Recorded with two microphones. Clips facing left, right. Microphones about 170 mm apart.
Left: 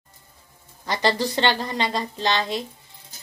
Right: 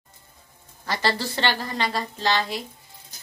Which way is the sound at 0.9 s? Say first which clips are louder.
Left 3 dB; 20° left (ahead or behind).